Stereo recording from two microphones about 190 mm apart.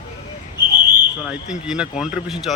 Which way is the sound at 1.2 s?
5° right (ahead or behind).